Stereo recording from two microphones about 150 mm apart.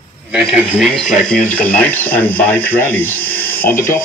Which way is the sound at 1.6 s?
10° left (ahead or behind).